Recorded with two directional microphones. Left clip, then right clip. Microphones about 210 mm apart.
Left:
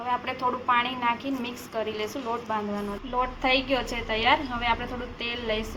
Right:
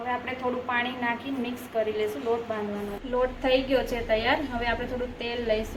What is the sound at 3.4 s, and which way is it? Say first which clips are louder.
A woman's voice: even; 20° left (ahead or behind).